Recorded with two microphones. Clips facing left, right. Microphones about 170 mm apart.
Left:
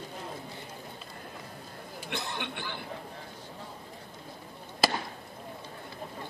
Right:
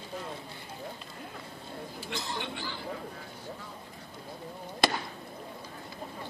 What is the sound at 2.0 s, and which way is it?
Speech, 60° left (ahead or behind).